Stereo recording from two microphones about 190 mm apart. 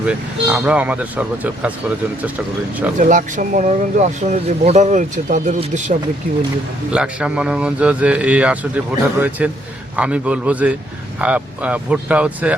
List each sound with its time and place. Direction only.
0.0 s a man's voice: 5° right (ahead or behind)
3.0 s speech: 40° right (ahead or behind)
6.9 s a man's voice: 5° right (ahead or behind)